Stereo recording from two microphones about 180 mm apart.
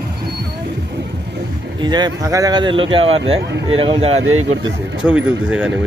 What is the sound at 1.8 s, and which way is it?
Speech, 25° right (ahead or behind).